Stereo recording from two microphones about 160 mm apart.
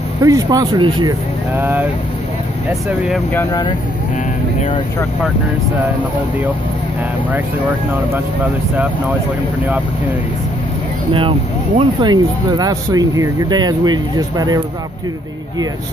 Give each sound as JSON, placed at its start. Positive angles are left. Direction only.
{"t": 0.2, "sound": "speech", "side_deg": -20}
{"t": 1.5, "sound": "speech", "side_deg": -10}
{"t": 11.1, "sound": "speech", "side_deg": -35}